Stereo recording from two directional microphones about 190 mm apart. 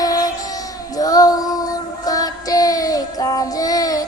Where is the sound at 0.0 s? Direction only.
20° left (ahead or behind).